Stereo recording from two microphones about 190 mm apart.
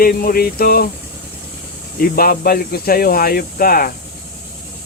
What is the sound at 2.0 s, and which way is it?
Speech, 50° left (ahead or behind).